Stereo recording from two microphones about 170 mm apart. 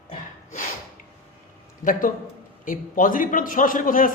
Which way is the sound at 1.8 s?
55° left (ahead or behind).